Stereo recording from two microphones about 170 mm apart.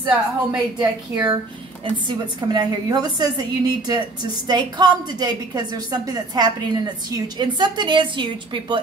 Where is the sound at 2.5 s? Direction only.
25° right (ahead or behind).